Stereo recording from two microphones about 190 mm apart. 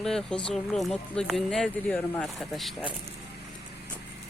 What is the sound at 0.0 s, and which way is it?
Speech, 5° left (ahead or behind).